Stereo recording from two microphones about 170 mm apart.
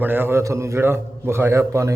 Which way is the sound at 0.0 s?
10° right (ahead or behind).